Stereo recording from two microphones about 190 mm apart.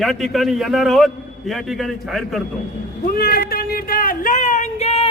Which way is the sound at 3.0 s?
50° left (ahead or behind).